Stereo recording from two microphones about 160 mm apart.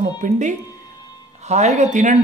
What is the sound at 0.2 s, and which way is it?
Speech, 50° right (ahead or behind).